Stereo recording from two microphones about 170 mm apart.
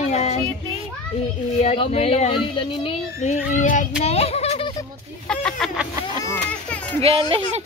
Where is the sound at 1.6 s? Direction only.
40° left (ahead or behind).